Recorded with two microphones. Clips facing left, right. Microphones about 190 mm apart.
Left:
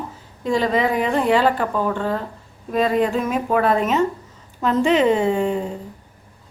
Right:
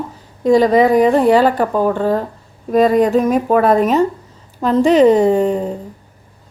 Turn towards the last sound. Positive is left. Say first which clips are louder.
# right 6 dB
turn(degrees=-40)  # may be behind; listen again after turning